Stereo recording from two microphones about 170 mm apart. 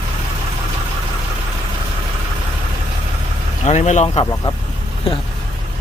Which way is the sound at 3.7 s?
45° left (ahead or behind).